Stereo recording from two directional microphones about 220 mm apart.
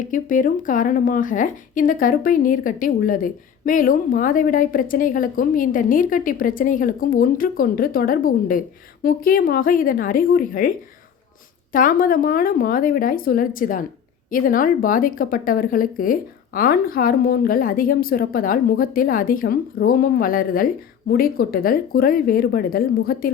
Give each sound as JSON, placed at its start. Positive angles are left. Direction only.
{"t": 0.0, "sound": "a woman's voice", "side_deg": 35}